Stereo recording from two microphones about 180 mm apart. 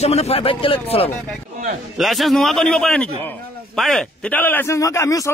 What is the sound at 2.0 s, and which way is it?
A man's voice, centre (ahead or behind).